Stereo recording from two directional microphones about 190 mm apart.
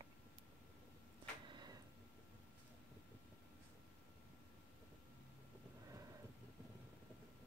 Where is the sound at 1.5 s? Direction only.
25° right (ahead or behind).